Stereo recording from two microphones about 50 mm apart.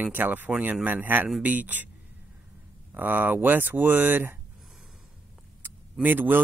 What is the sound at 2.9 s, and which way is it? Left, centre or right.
Speech, right.